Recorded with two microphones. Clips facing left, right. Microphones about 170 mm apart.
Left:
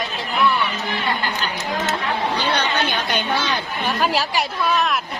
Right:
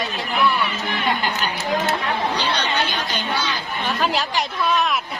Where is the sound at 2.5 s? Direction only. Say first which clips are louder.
Left 2 dB; 55° left (ahead or behind).